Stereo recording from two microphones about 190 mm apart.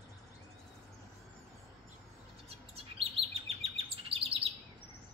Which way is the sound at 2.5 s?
30° right (ahead or behind).